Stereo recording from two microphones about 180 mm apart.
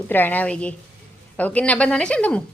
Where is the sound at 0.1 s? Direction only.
10° left (ahead or behind).